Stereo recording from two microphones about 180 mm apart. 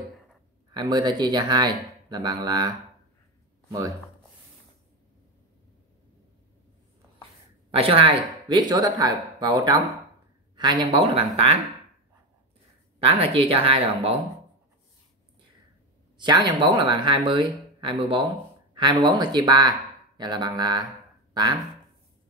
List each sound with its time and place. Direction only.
0.7 s speech: 25° right (ahead or behind)
7.7 s speech: 30° right (ahead or behind)
13.0 s speech: 30° right (ahead or behind)
16.2 s speech: 25° right (ahead or behind)
21.3 s a sound: 25° right (ahead or behind)